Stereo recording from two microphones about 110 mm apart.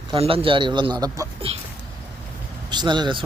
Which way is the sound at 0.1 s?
60° right (ahead or behind).